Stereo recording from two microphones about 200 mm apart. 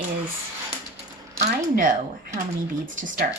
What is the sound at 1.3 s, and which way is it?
Speech, 40° right (ahead or behind).